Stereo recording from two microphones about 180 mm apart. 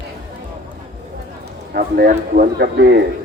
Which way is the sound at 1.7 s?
55° right (ahead or behind).